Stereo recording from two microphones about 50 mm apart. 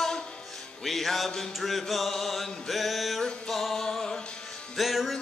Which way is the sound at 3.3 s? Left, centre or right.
Centre.